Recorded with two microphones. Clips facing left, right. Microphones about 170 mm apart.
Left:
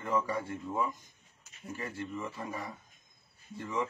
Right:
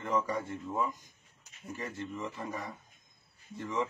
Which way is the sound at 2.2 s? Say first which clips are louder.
Even; 5° left (ahead or behind).